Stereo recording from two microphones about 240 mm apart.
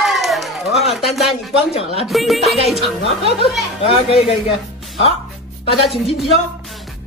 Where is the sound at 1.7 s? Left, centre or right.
Left.